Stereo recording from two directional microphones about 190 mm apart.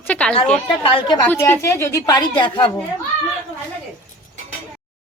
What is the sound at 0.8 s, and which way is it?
Speech, 25° left (ahead or behind).